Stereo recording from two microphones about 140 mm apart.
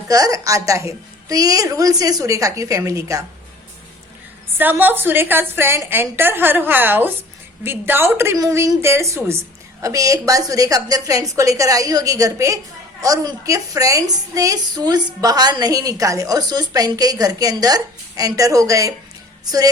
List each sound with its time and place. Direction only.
0.1 s a woman's voice: 25° right (ahead or behind)
4.5 s a woman's voice: 15° right (ahead or behind)